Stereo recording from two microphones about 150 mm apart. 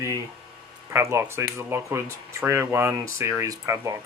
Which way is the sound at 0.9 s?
15° right (ahead or behind).